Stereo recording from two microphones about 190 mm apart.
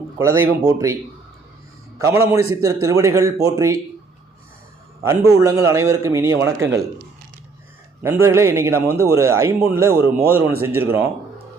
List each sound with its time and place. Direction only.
0.2 s a man's voice: 15° right (ahead or behind)
2.0 s a man's voice: 15° right (ahead or behind)
5.0 s a man's voice: 15° right (ahead or behind)
8.0 s a man's voice: 15° right (ahead or behind)